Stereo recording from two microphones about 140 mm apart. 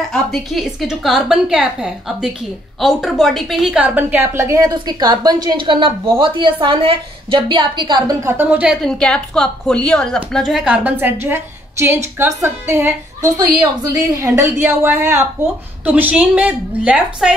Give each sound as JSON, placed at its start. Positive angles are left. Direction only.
{"t": 0.1, "sound": "a woman's voice", "side_deg": 0}
{"t": 8.3, "sound": "a woman's voice", "side_deg": -10}
{"t": 8.8, "sound": "a woman's voice", "side_deg": 5}